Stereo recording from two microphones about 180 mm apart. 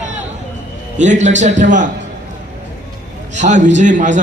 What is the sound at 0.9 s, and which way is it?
Speech, 40° right (ahead or behind).